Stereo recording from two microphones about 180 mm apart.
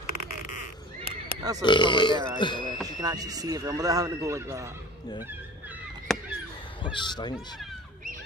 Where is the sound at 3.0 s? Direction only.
20° right (ahead or behind).